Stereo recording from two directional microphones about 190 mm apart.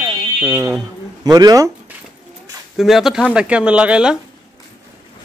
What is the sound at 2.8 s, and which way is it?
Speech, centre (ahead or behind).